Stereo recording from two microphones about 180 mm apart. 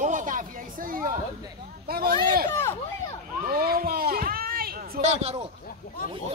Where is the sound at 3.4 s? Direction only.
55° right (ahead or behind).